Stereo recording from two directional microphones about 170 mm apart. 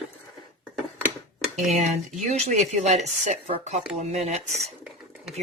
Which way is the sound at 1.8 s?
45° right (ahead or behind).